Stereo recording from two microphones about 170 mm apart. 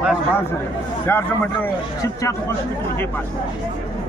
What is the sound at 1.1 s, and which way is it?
A man's voice, 15° left (ahead or behind).